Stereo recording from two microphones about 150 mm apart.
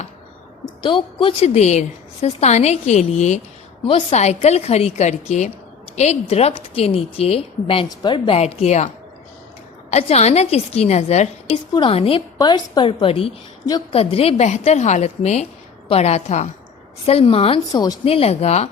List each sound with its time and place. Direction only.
0.6 s a woman's voice: 30° left (ahead or behind)
9.9 s a woman's voice: 45° left (ahead or behind)
17.7 s a woman's voice: 25° left (ahead or behind)
18.0 s a woman's voice: 40° left (ahead or behind)